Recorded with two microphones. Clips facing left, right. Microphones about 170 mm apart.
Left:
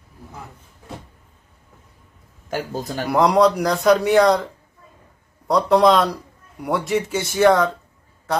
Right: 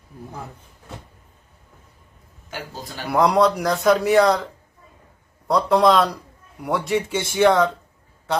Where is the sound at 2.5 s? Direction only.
50° left (ahead or behind).